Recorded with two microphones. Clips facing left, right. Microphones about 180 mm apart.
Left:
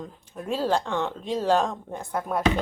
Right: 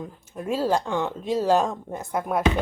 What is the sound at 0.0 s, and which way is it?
Speech, 5° right (ahead or behind).